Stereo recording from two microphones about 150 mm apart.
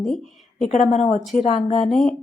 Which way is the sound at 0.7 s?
45° left (ahead or behind).